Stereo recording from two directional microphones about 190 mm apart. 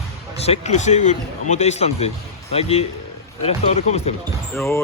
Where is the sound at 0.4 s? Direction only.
35° left (ahead or behind).